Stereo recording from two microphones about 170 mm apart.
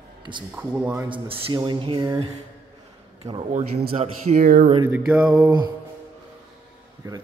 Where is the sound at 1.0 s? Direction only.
30° right (ahead or behind).